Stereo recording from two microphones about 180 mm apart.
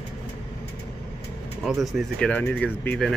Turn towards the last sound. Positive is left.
turn(degrees=5)  # may be behind; listen again after turning